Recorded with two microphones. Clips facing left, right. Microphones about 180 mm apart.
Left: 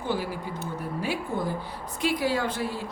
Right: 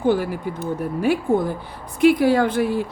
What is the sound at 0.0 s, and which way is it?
A woman's voice, 55° right (ahead or behind).